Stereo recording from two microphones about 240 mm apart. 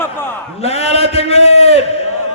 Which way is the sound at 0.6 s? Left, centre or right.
Left.